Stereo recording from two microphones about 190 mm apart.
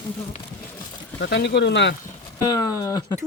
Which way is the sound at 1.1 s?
65° left (ahead or behind).